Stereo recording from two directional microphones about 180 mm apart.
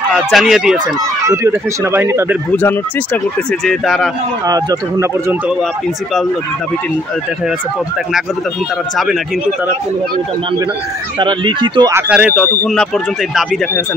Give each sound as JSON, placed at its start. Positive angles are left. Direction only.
{"t": 0.3, "sound": "speech", "side_deg": 0}
{"t": 1.2, "sound": "speech", "side_deg": -15}
{"t": 3.6, "sound": "speech", "side_deg": 0}
{"t": 4.5, "sound": "speech", "side_deg": -20}
{"t": 11.1, "sound": "speech", "side_deg": -25}
{"t": 11.9, "sound": "speech", "side_deg": -5}